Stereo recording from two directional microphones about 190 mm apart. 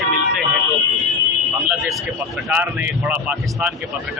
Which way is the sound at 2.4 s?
5° right (ahead or behind).